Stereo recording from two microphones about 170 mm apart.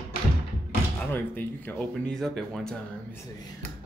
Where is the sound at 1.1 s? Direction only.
10° left (ahead or behind).